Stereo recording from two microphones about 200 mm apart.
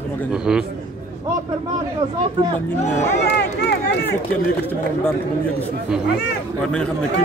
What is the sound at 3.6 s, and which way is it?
Run, 55° left (ahead or behind).